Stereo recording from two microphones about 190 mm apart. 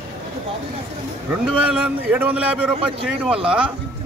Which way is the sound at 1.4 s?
5° right (ahead or behind).